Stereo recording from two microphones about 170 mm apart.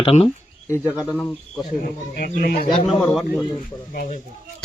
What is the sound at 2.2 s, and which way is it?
Speech, 60° left (ahead or behind).